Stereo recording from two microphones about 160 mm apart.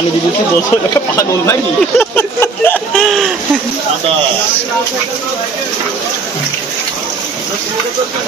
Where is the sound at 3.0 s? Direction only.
Centre (ahead or behind).